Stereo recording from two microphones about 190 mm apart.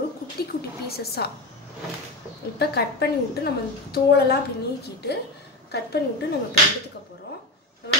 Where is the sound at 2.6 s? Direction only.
55° left (ahead or behind).